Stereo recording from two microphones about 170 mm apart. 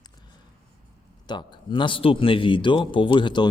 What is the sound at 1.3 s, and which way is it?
Speech, 25° left (ahead or behind).